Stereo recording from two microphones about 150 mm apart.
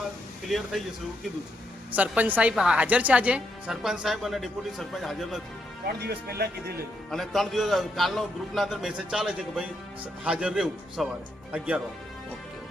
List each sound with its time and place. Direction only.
0.4 s a man's voice: centre (ahead or behind)
1.9 s a woman's voice: 10° right (ahead or behind)
5.8 s speech: 90° right
7.1 s a man's voice: centre (ahead or behind)